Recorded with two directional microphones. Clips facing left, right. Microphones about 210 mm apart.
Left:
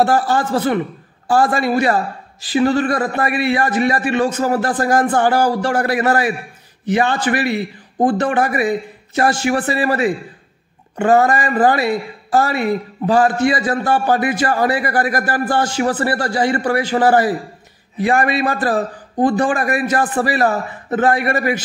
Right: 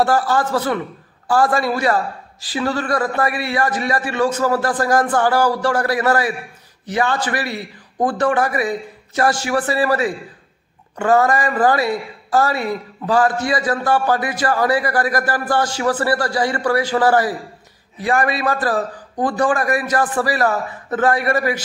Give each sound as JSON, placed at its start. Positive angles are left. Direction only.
{"t": 0.0, "sound": "a man's voice", "side_deg": 25}